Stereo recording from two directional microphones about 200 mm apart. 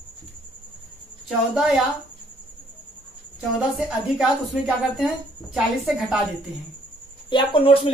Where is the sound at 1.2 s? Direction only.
Centre (ahead or behind).